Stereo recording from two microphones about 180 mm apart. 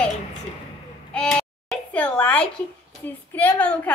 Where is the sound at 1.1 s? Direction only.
5° left (ahead or behind).